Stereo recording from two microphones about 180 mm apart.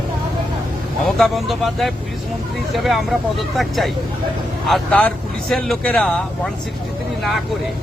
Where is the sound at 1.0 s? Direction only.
Centre (ahead or behind).